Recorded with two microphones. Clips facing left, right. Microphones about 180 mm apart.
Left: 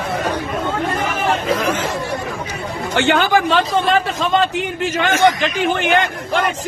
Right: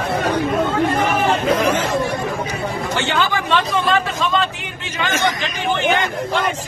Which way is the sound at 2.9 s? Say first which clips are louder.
Left 7 dB; 60° left (ahead or behind).